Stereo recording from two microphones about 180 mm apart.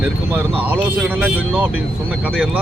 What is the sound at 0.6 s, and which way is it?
Speech, 10° right (ahead or behind).